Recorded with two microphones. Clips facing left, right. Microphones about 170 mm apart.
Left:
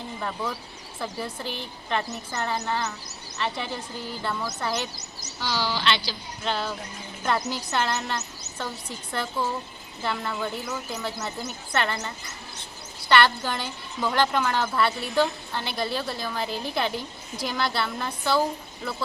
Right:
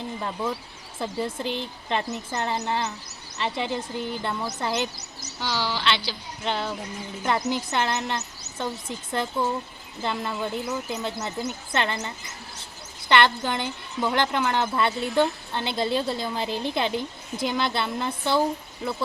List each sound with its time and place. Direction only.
0.2 s a woman's voice: 20° right (ahead or behind)
5.5 s a woman's voice: 5° left (ahead or behind)
6.1 s a woman's voice: 20° right (ahead or behind)